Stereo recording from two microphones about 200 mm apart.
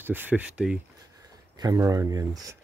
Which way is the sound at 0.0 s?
10° right (ahead or behind).